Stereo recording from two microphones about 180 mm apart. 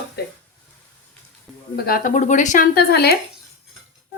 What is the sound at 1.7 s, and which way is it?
Speech, 55° left (ahead or behind).